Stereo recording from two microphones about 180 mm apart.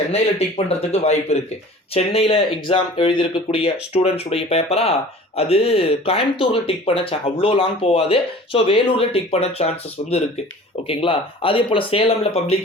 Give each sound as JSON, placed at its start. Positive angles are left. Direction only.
{"t": 0.1, "sound": "speech", "side_deg": 35}